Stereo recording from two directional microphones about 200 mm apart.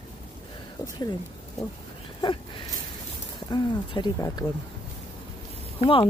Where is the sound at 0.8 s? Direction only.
15° left (ahead or behind).